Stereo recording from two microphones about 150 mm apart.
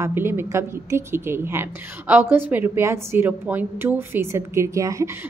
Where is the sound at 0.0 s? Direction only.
15° right (ahead or behind).